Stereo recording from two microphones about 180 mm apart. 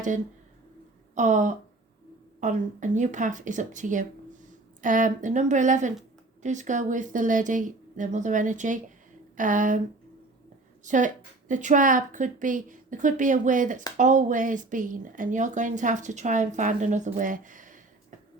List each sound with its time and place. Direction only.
1.1 s speech: 45° right (ahead or behind)
10.8 s speech: 45° right (ahead or behind)